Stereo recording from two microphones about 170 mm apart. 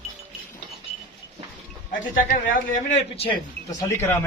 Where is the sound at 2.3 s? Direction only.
50° left (ahead or behind).